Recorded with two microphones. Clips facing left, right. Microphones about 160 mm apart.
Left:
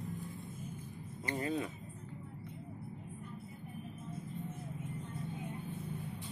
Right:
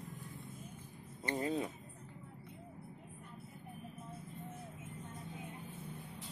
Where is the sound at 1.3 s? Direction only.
30° right (ahead or behind).